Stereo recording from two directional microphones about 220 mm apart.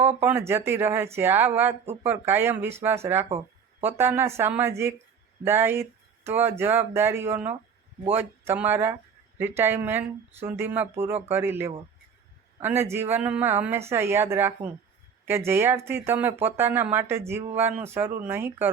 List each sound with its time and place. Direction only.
0.2 s speech: 10° right (ahead or behind)
3.2 s a sound: 25° right (ahead or behind)
3.8 s speech: 10° right (ahead or behind)